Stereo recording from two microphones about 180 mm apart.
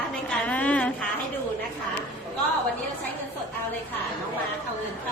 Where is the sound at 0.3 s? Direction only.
10° left (ahead or behind).